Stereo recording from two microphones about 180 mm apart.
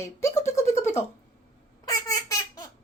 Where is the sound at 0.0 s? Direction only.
15° left (ahead or behind).